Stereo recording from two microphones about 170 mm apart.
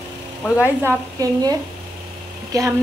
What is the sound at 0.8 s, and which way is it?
A woman's voice, 20° right (ahead or behind).